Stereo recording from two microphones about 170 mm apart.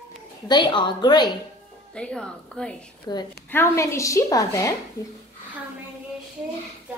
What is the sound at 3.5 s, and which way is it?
A woman's voice, 15° left (ahead or behind).